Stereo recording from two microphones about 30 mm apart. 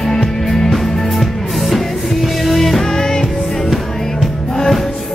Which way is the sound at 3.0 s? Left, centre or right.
Centre.